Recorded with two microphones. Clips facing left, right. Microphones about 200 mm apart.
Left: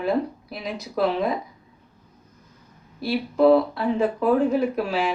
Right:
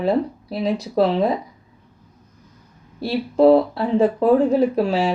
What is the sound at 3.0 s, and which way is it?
A woman's voice, 30° right (ahead or behind).